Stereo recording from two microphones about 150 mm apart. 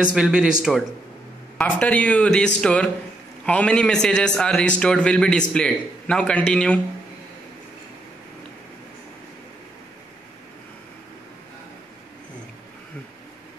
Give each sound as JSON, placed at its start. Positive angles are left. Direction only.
{"t": 0.0, "sound": "a man's voice", "side_deg": -5}
{"t": 1.6, "sound": "a man's voice", "side_deg": 10}